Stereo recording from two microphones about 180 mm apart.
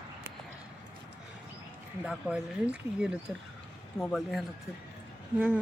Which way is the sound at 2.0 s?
5° right (ahead or behind).